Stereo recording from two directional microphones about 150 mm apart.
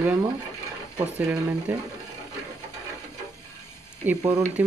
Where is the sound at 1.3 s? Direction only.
10° right (ahead or behind).